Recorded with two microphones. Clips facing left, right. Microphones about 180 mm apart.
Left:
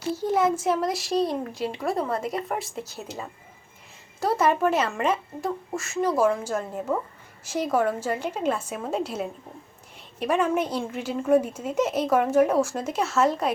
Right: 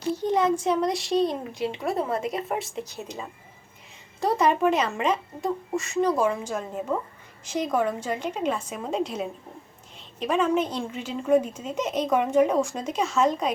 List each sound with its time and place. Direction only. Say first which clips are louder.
0.0 s a child's voice: even; 5° left (ahead or behind)